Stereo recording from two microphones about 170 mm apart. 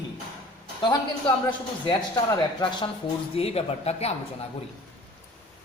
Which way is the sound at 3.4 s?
35° left (ahead or behind).